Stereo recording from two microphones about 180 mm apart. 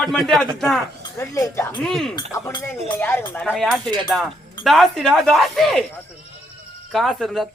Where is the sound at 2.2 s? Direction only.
20° left (ahead or behind); by 5.8 s centre (ahead or behind).